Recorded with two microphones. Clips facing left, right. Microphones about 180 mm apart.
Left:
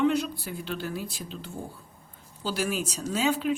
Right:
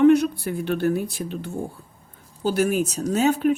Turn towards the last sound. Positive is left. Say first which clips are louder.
# right 7 dB
turn(degrees=-50)  # may be behind; listen again after turning